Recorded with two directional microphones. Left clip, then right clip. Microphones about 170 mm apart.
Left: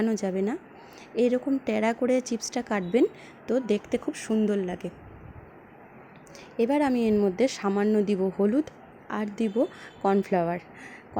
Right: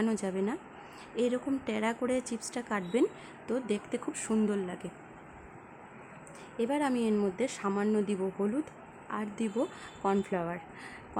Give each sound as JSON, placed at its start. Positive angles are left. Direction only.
{"t": 0.0, "sound": "a woman's voice", "side_deg": 15}
{"t": 6.6, "sound": "a woman's voice", "side_deg": 20}